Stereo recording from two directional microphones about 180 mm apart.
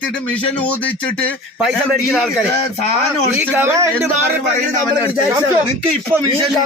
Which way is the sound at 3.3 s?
15° right (ahead or behind).